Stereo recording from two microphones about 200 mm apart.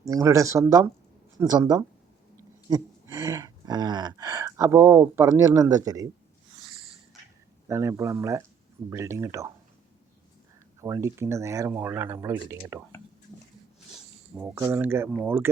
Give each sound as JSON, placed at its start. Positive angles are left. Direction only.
{"t": 0.0, "sound": "speech", "side_deg": -15}
{"t": 2.6, "sound": "gasp", "side_deg": -15}
{"t": 7.7, "sound": "speech", "side_deg": -15}
{"t": 10.8, "sound": "speech", "side_deg": -15}
{"t": 14.3, "sound": "speech", "side_deg": -10}